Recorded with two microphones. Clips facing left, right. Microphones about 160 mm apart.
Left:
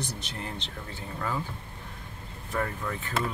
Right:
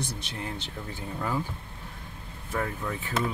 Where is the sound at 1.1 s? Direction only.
10° right (ahead or behind).